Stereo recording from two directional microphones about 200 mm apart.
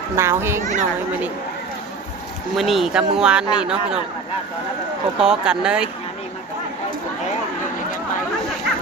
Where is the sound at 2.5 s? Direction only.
Centre (ahead or behind).